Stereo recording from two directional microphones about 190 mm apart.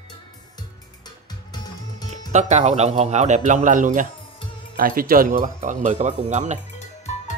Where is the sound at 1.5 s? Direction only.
20° left (ahead or behind).